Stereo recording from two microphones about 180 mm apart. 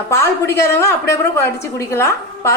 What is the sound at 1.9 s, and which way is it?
Speech, 15° left (ahead or behind).